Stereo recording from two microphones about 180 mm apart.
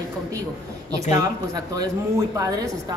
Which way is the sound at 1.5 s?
20° right (ahead or behind).